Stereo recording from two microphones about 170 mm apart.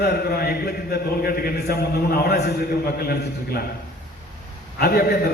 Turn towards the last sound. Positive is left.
turn(degrees=65)  # may be behind; listen again after turning